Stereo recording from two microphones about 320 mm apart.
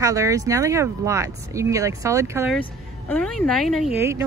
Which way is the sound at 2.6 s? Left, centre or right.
Centre.